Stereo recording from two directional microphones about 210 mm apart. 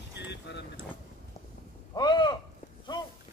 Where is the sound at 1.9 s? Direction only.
20° left (ahead or behind).